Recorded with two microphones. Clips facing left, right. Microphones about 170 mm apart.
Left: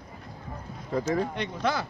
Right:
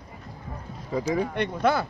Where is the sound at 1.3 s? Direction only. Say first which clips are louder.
Right 5 dB; 55° right (ahead or behind).